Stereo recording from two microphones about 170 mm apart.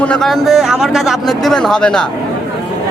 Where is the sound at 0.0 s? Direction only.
5° left (ahead or behind).